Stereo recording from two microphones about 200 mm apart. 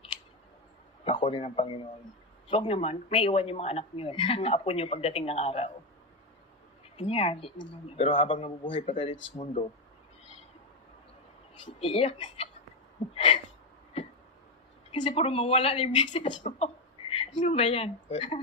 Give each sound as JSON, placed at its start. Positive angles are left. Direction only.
{"t": 1.0, "sound": "speech", "side_deg": 30}
{"t": 6.9, "sound": "speech", "side_deg": 30}
{"t": 11.6, "sound": "speech", "side_deg": 30}
{"t": 13.1, "sound": "a sound", "side_deg": 30}
{"t": 15.0, "sound": "a woman's voice", "side_deg": 30}